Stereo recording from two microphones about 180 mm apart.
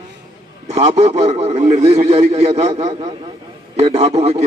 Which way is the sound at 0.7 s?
35° right (ahead or behind).